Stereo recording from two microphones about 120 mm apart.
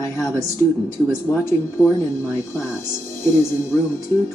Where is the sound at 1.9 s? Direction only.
25° left (ahead or behind).